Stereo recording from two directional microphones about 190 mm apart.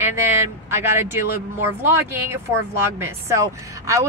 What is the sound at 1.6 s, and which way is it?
A woman's voice, 10° right (ahead or behind).